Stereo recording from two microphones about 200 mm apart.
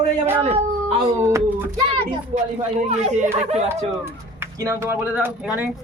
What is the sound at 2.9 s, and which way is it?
Speech, 35° right (ahead or behind).